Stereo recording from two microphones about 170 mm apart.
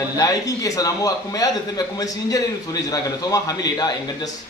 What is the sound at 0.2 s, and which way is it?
A man's voice, 20° left (ahead or behind).